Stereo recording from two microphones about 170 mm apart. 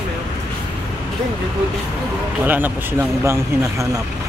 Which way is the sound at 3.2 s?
15° right (ahead or behind).